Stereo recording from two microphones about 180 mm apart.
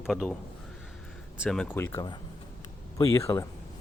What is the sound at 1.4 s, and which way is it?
Speech, 5° left (ahead or behind).